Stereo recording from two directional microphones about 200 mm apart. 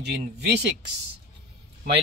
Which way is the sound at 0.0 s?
55° right (ahead or behind).